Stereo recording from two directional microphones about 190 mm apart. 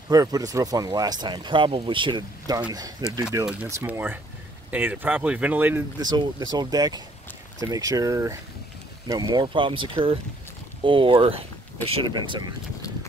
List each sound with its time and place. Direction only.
0.1 s speech: 20° right (ahead or behind)
5.9 s speech: 20° right (ahead or behind)